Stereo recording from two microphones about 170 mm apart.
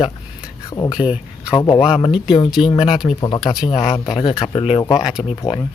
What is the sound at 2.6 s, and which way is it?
Speech, 25° left (ahead or behind).